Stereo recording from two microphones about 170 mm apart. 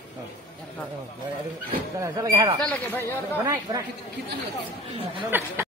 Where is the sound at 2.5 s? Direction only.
10° left (ahead or behind).